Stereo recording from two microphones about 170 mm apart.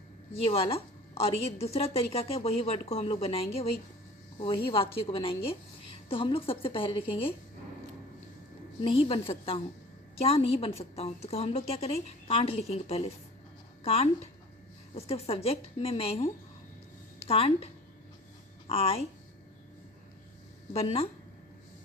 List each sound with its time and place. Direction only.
0.4 s a woman's voice: 35° left (ahead or behind)
8.8 s a woman's voice: 30° left (ahead or behind)
18.7 s a woman's voice: 35° left (ahead or behind)
20.7 s a woman's voice: 35° left (ahead or behind)